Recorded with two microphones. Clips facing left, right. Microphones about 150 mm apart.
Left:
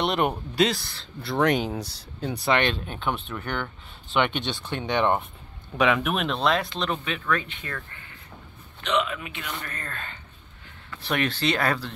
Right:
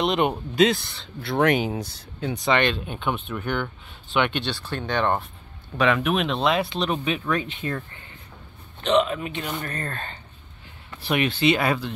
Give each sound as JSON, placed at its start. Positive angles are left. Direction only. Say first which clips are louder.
{"t": 0.0, "sound": "speech", "louder": "right 2 dB", "side_deg": -20}
{"t": 0.3, "sound": "speech", "louder": "right 4 dB", "side_deg": 0}
{"t": 2.9, "sound": "speech", "louder": "right 2 dB", "side_deg": -5}
{"t": 4.5, "sound": "speech", "louder": "even", "side_deg": 20}
{"t": 5.8, "sound": "speech", "louder": "right 2 dB", "side_deg": 5}
{"t": 8.8, "sound": "a man's voice", "louder": "right 5 dB", "side_deg": -35}
{"t": 11.1, "sound": "speech", "louder": "right 4 dB", "side_deg": -5}